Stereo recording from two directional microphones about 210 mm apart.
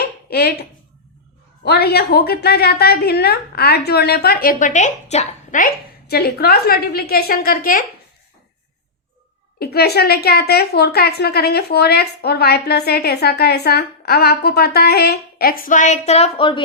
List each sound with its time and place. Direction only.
0.3 s a woman's voice: 50° left (ahead or behind)
1.6 s a woman's voice: 50° left (ahead or behind)
6.1 s a woman's voice: 45° left (ahead or behind)
9.6 s a woman's voice: 50° left (ahead or behind); by 16.6 s 25° left (ahead or behind)